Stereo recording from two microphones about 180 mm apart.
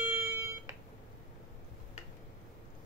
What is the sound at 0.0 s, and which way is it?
Smoke detector, 10° right (ahead or behind).